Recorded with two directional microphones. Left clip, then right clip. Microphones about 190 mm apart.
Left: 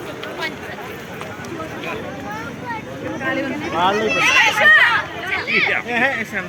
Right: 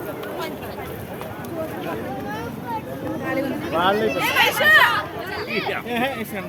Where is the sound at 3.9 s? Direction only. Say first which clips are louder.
Left 2 dB; 15° left (ahead or behind).